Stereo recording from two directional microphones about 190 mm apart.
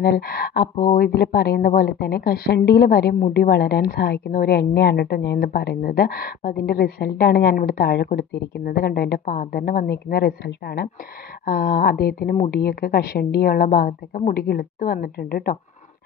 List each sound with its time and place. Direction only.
0.0 s a woman's voice: 55° left (ahead or behind)